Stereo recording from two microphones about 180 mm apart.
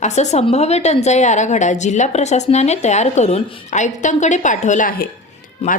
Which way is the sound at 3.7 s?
40° left (ahead or behind).